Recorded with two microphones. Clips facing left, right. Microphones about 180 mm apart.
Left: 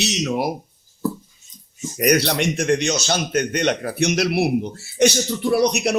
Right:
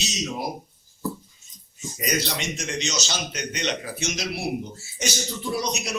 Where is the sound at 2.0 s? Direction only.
65° left (ahead or behind).